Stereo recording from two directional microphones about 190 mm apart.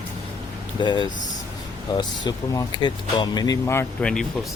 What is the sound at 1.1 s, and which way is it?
Speech, 40° left (ahead or behind).